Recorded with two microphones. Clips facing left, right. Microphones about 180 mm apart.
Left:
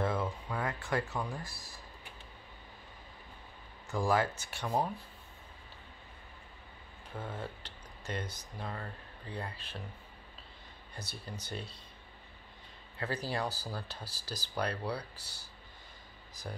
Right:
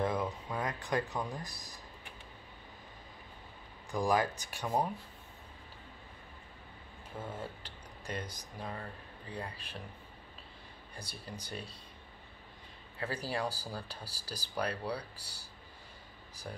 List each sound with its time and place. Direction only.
0.0 s a sound: 15° right (ahead or behind)
3.9 s speech: 15° right (ahead or behind)
7.2 s speech: 10° right (ahead or behind)
11.0 s speech: 10° right (ahead or behind)
13.0 s speech: 10° right (ahead or behind)